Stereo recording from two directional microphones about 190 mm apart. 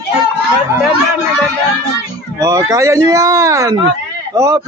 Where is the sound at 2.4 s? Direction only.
20° right (ahead or behind).